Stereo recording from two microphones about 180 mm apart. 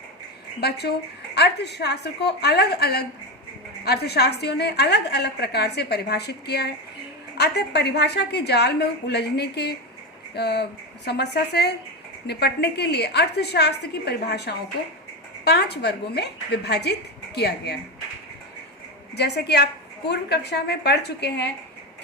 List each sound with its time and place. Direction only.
0.6 s a woman's voice: 65° left (ahead or behind)
19.1 s a woman's voice: 65° left (ahead or behind)